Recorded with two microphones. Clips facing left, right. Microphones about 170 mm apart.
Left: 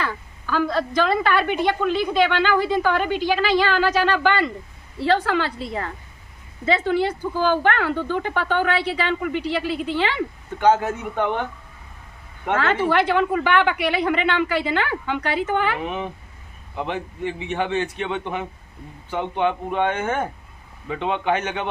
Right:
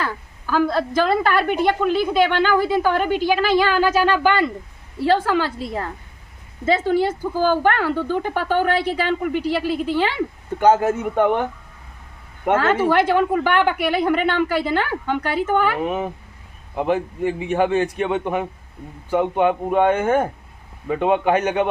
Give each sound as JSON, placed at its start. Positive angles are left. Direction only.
{"t": 0.0, "sound": "a woman's voice", "side_deg": -45}
{"t": 12.5, "sound": "speech", "side_deg": -45}